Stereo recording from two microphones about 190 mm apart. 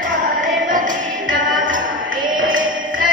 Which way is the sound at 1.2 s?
90° right.